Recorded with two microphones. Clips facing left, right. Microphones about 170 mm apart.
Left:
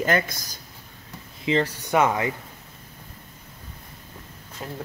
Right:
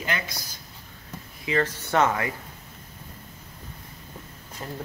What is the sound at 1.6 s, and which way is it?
Speech, 10° left (ahead or behind).